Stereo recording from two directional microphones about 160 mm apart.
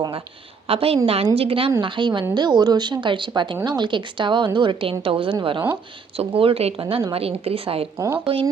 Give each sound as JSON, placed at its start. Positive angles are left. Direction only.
{"t": 0.7, "sound": "a woman's voice", "side_deg": -35}
{"t": 7.9, "sound": "speech", "side_deg": -15}